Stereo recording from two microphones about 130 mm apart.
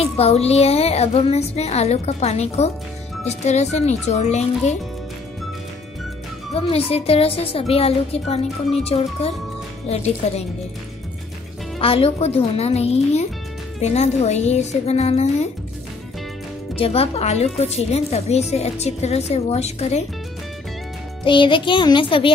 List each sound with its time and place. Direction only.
0.0 s a woman's voice: 50° left (ahead or behind)
6.5 s a woman's voice: 50° left (ahead or behind)
11.8 s a woman's voice: 45° left (ahead or behind)
16.7 s a woman's voice: 50° left (ahead or behind)
21.2 s music: 40° left (ahead or behind)